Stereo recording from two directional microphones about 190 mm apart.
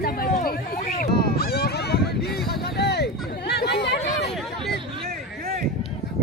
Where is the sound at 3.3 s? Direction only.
60° left (ahead or behind).